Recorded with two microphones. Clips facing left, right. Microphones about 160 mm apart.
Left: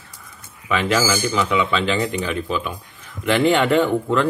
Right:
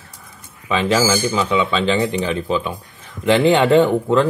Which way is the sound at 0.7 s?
25° right (ahead or behind).